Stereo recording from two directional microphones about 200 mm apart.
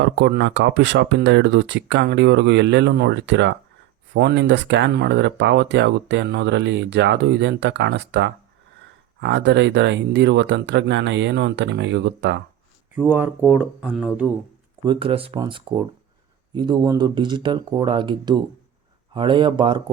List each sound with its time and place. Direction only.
0.0 s speech: 60° right (ahead or behind)
13.0 s speech: 10° right (ahead or behind)
14.8 s speech: 25° right (ahead or behind)